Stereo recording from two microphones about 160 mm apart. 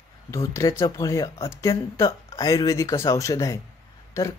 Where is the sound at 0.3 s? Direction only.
20° left (ahead or behind).